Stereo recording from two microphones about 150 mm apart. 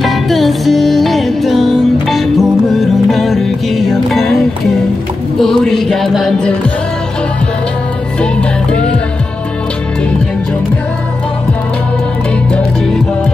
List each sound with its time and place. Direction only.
0.0 s music: centre (ahead or behind)
5.4 s music: centre (ahead or behind)
8.2 s music: 5° left (ahead or behind)